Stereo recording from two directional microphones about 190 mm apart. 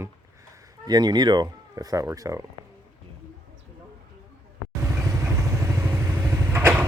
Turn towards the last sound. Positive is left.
turn(degrees=-10)  # may be behind; listen again after turning